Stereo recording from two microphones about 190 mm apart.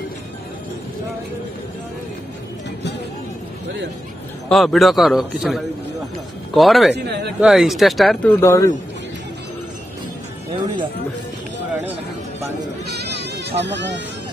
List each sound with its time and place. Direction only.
4.5 s speech: centre (ahead or behind)
6.9 s speech: 65° right (ahead or behind)
7.3 s speech: 5° right (ahead or behind); by 8.7 s 15° left (ahead or behind)
12.9 s a sound: 60° right (ahead or behind)